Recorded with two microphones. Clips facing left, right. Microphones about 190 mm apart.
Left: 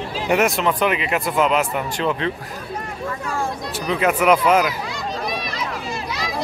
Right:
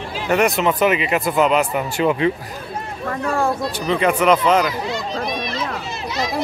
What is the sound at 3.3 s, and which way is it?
Speech, 60° right (ahead or behind).